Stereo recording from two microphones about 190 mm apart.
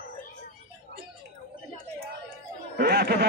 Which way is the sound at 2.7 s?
55° right (ahead or behind).